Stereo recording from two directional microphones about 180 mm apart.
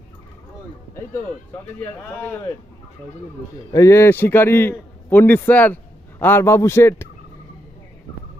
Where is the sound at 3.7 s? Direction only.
15° left (ahead or behind).